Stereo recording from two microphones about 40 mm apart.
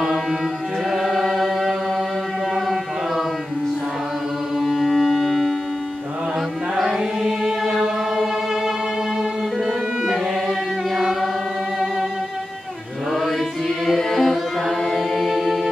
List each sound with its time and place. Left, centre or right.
0.8 s chant: centre
4.6 s music: centre
7.0 s music: centre
9.2 s violin: centre
11.0 s singing: centre
13.9 s music: centre